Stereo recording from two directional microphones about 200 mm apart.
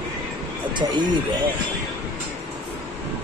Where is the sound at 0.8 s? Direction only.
20° right (ahead or behind).